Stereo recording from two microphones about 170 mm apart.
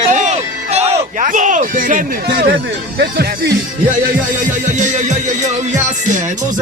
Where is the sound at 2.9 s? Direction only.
70° right (ahead or behind).